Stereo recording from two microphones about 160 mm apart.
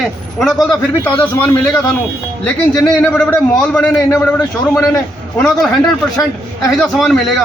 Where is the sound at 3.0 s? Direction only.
10° left (ahead or behind).